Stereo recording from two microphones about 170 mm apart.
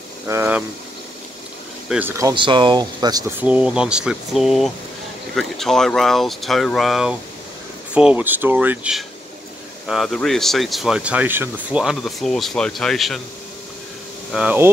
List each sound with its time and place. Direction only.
0.3 s speech: 10° right (ahead or behind)
1.9 s speech: 10° right (ahead or behind)
2.3 s speech: 30° right (ahead or behind)
3.3 s speech: 5° right (ahead or behind)
14.3 s speech: 10° right (ahead or behind)